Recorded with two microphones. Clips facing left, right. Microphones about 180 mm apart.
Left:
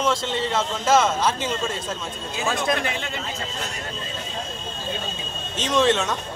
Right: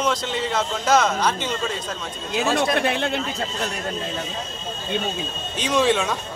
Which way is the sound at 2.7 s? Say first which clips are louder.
Right 6 dB; 75° right (ahead or behind).